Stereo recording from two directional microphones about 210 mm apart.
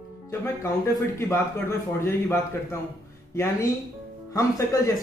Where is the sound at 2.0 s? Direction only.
10° left (ahead or behind).